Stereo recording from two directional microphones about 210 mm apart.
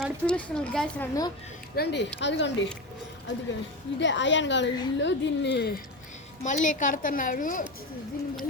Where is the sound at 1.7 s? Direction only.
50° left (ahead or behind).